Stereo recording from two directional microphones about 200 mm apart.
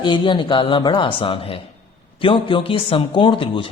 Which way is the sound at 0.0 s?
25° left (ahead or behind).